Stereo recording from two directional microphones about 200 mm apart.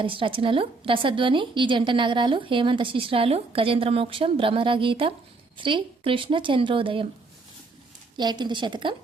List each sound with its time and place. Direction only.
0.0 s a woman's voice: 25° right (ahead or behind)
8.1 s a woman's voice: 20° right (ahead or behind)